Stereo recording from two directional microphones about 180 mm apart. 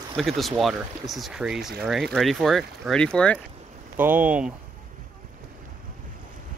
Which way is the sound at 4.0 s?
10° right (ahead or behind).